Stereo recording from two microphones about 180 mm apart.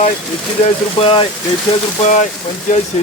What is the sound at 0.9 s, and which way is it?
Speech, 30° left (ahead or behind).